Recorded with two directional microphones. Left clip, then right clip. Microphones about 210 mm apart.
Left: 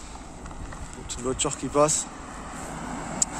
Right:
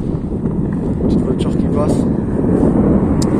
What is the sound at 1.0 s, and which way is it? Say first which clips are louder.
Speech: right 9 dB; 20° left (ahead or behind).